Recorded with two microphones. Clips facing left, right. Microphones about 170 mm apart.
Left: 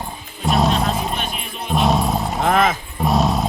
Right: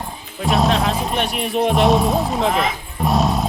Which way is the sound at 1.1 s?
75° right (ahead or behind).